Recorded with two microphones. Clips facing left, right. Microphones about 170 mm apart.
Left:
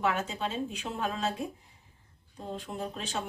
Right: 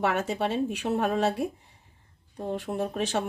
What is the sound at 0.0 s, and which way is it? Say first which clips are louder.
Speech: right 4 dB; 70° right (ahead or behind).